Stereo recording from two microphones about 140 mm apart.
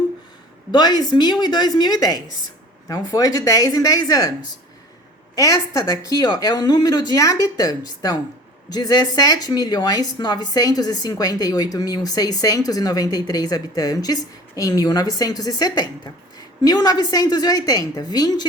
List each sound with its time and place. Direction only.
0.7 s speech: 30° left (ahead or behind)
5.3 s speech: 25° left (ahead or behind)